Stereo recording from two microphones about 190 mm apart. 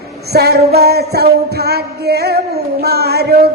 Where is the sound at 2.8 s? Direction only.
60° right (ahead or behind).